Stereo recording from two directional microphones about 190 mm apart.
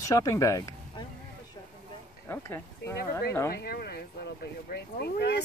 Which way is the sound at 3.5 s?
55° left (ahead or behind).